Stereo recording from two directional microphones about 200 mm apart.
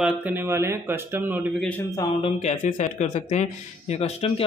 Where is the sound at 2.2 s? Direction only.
35° left (ahead or behind).